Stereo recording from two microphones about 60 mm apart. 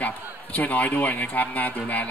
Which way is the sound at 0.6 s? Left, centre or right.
Left.